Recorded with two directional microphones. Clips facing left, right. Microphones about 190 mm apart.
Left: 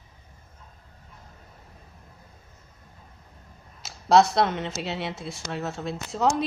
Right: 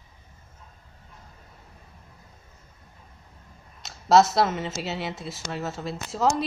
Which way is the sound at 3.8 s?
Centre (ahead or behind).